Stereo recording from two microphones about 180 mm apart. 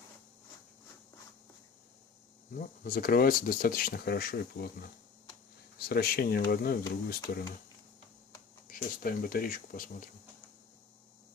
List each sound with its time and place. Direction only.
2.6 s speech: 50° left (ahead or behind)
5.9 s speech: 60° left (ahead or behind)
8.6 s speech: 55° left (ahead or behind)